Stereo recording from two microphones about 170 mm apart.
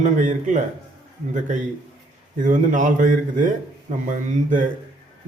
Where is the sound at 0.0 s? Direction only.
45° right (ahead or behind).